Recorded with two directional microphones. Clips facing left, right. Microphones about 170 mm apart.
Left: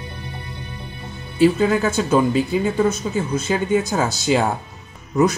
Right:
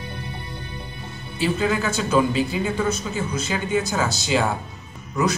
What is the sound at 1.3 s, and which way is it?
Speech, 45° left (ahead or behind).